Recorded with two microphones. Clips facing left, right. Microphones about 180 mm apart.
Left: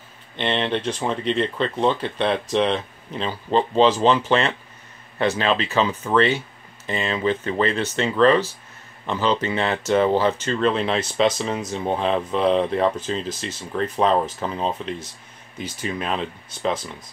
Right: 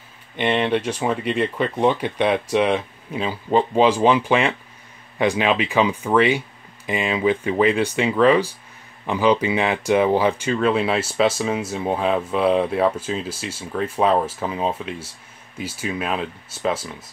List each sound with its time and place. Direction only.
0.4 s speech: 10° right (ahead or behind)